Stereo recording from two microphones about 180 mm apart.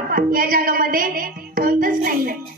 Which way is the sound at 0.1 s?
50° right (ahead or behind).